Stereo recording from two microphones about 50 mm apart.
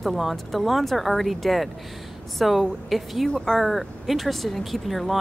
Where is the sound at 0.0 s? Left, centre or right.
Centre.